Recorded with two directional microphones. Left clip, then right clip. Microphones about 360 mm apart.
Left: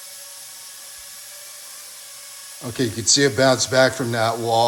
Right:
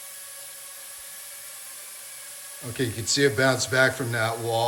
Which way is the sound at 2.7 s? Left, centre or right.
Centre.